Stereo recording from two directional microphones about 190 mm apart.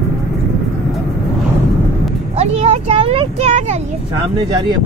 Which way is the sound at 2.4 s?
35° right (ahead or behind).